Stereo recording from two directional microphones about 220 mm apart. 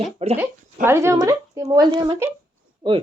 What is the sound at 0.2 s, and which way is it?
Speech, 30° right (ahead or behind).